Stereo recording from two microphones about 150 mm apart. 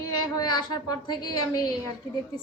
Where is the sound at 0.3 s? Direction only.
25° left (ahead or behind).